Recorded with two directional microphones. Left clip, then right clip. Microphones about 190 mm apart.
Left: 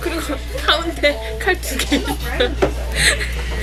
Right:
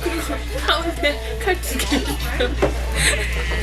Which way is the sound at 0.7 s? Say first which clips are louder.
Left 3 dB; 10° left (ahead or behind).